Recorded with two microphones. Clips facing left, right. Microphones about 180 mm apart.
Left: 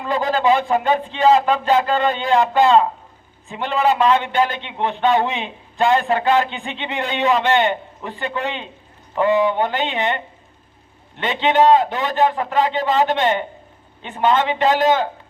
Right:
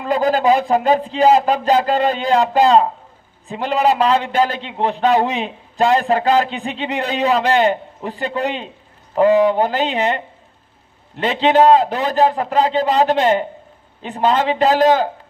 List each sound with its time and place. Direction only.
0.1 s a man's voice: 40° right (ahead or behind)